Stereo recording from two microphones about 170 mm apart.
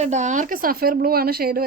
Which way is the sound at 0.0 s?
45° right (ahead or behind).